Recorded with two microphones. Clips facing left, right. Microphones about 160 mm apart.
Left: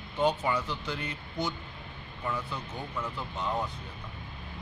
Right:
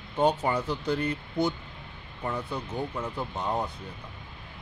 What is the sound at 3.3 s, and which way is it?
Speech, 40° right (ahead or behind).